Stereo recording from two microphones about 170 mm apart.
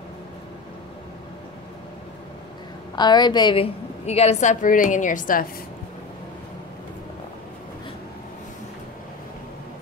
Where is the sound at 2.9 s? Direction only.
25° left (ahead or behind).